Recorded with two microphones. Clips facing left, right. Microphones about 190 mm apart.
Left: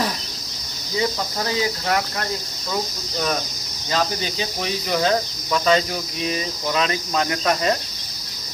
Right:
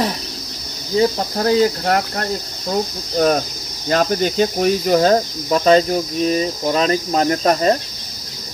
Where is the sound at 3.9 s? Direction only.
50° right (ahead or behind).